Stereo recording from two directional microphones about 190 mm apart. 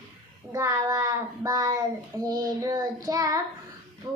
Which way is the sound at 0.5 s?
15° right (ahead or behind).